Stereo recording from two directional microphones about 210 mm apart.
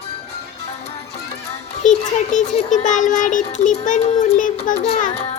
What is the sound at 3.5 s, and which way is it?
Speech, 35° left (ahead or behind).